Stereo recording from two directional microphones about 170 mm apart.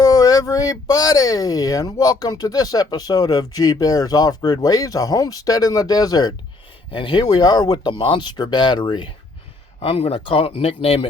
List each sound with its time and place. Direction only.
0.0 s speech: 20° left (ahead or behind)